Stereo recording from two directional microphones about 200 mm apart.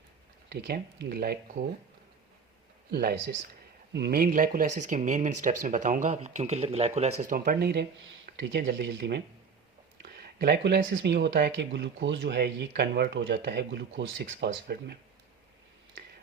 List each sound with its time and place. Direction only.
0.5 s speech: 55° right (ahead or behind)
2.9 s speech: 50° right (ahead or behind); by 7.1 s 30° right (ahead or behind)
7.2 s speech: 45° right (ahead or behind)